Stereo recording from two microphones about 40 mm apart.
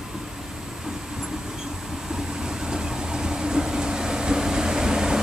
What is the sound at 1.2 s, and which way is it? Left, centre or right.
Vehicle, centre.